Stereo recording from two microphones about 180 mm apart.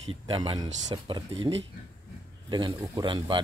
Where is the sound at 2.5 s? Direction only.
25° right (ahead or behind).